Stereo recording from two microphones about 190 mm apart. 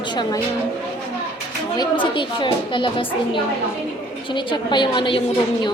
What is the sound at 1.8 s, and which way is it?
A woman's voice, 25° left (ahead or behind).